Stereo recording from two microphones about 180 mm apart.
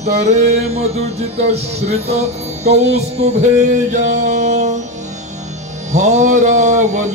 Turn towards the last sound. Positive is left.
turn(degrees=-40)  # may be behind; listen again after turning